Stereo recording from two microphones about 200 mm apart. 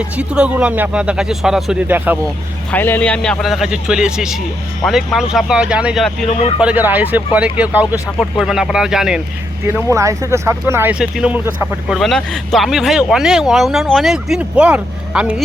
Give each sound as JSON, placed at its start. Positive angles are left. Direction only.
{"t": 0.2, "sound": "speech", "side_deg": -5}
{"t": 2.7, "sound": "speech", "side_deg": 10}
{"t": 6.2, "sound": "speech", "side_deg": 30}
{"t": 6.6, "sound": "speech", "side_deg": -5}
{"t": 9.7, "sound": "speech", "side_deg": -15}
{"t": 11.9, "sound": "speech", "side_deg": 0}